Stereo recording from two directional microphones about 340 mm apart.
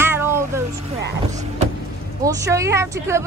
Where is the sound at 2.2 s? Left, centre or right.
Centre.